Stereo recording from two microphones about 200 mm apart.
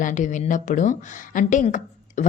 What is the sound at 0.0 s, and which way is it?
A woman's voice, 40° left (ahead or behind).